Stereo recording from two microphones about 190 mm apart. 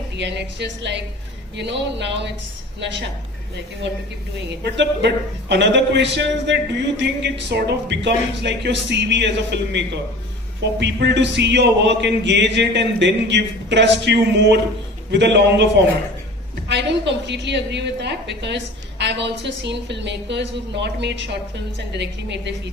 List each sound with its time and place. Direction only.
0.2 s a man's voice: 65° right (ahead or behind)
3.8 s a man's voice: 65° right (ahead or behind)
17.2 s a man's voice: 65° right (ahead or behind)